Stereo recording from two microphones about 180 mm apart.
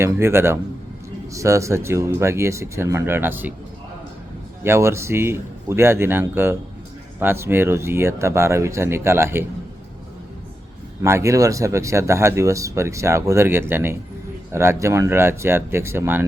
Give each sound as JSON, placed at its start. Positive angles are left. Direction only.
{"t": 0.0, "sound": "speech", "side_deg": -15}
{"t": 4.6, "sound": "speech", "side_deg": -15}
{"t": 11.0, "sound": "speech", "side_deg": -15}